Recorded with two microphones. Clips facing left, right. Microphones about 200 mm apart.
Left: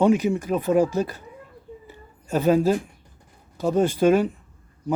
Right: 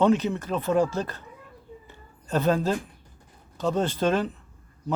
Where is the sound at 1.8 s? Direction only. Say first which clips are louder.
Left 2 dB; 10° left (ahead or behind).